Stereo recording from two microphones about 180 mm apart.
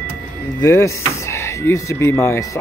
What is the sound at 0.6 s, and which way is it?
Speech, 15° left (ahead or behind).